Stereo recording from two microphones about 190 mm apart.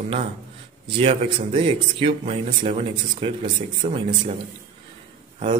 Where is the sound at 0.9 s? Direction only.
30° right (ahead or behind).